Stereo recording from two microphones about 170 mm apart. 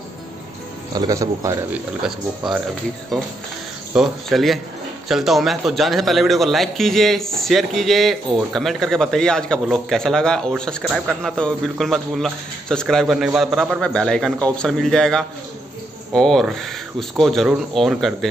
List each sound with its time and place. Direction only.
0.9 s speech: 20° right (ahead or behind)
1.7 s a man's voice: 5° right (ahead or behind)
3.9 s a man's voice: centre (ahead or behind)